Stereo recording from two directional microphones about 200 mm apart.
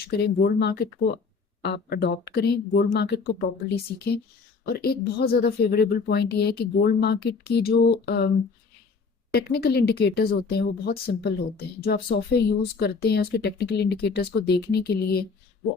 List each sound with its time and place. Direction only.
0.0 s speech: 55° left (ahead or behind)
9.3 s speech: 50° left (ahead or behind)